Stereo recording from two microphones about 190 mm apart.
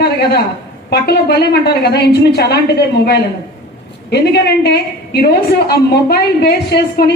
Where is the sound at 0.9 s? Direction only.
60° left (ahead or behind).